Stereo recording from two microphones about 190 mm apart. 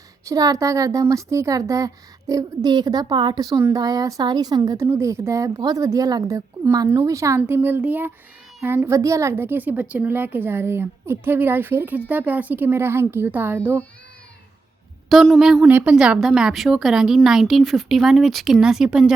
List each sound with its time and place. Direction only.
0.3 s a woman's voice: 15° right (ahead or behind)
15.1 s a woman's voice: centre (ahead or behind)